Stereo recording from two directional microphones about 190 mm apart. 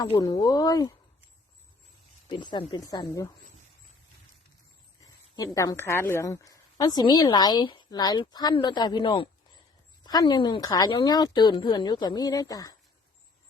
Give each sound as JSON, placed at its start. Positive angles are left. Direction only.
{"t": 0.0, "sound": "a woman's voice", "side_deg": 20}
{"t": 2.2, "sound": "a woman's voice", "side_deg": 25}
{"t": 5.5, "sound": "a woman's voice", "side_deg": 15}